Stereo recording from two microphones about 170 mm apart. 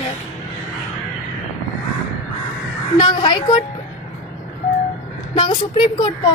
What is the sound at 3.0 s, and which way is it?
Speech, 30° left (ahead or behind).